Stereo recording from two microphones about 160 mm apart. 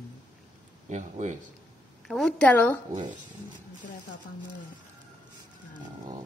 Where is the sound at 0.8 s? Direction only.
45° right (ahead or behind).